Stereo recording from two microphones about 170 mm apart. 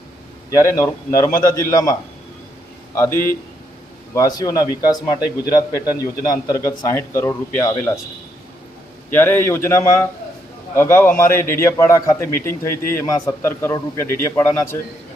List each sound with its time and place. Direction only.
0.5 s a man's voice: 20° left (ahead or behind)
5.8 s a man's voice: 10° right (ahead or behind)
6.2 s a man's voice: 20° left (ahead or behind)
9.0 s a man's voice: 15° left (ahead or behind)